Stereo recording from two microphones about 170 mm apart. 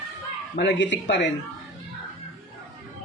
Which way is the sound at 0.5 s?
90° left.